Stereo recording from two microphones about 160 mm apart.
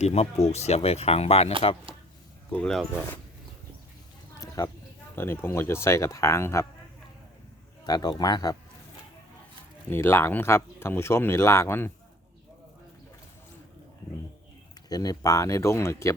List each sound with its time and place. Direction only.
0.0 s speech: 40° left (ahead or behind)
2.5 s speech: 5° left (ahead or behind)
4.4 s a sound: 20° left (ahead or behind)
5.1 s speech: 15° left (ahead or behind)
7.9 s speech: 25° left (ahead or behind)
9.9 s speech: 15° left (ahead or behind)
14.8 s speech: 25° left (ahead or behind)